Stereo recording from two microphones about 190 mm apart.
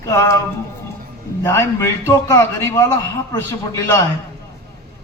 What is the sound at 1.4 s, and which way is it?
A man's voice, 15° left (ahead or behind).